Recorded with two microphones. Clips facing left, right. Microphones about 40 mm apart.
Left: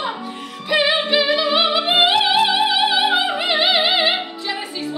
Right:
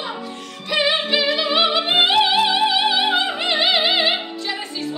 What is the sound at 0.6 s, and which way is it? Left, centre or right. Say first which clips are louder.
Music: left 2 dB; centre.